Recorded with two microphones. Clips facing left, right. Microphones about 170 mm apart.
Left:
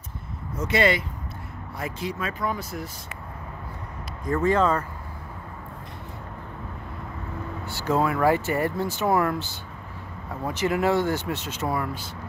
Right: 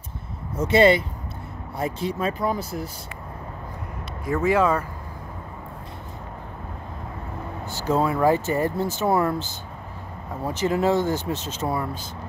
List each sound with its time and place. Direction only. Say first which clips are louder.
0.6 s speech: right 6 dB; 25° right (ahead or behind)
4.3 s speech: right 1 dB; 10° right (ahead or behind)
7.6 s speech: right 2 dB; 45° right (ahead or behind)
7.9 s speech: right 1 dB; 25° right (ahead or behind)
9.0 s speech: right 1 dB; 30° right (ahead or behind)
10.4 s speech: right 2 dB; 25° right (ahead or behind)